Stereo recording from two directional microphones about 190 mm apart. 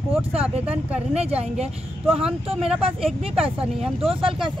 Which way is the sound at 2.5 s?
5° right (ahead or behind).